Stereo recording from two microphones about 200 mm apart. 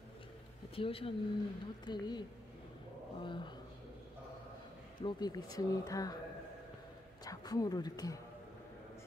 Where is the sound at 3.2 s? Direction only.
25° left (ahead or behind).